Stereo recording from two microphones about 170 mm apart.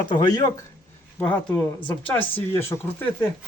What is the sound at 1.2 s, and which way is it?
Speech, 10° left (ahead or behind).